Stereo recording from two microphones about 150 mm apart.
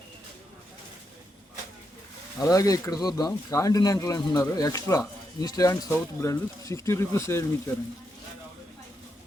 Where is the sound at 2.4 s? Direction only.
25° left (ahead or behind).